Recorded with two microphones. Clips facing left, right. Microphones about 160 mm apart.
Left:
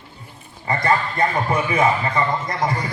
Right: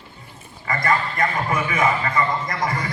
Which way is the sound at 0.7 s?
30° left (ahead or behind).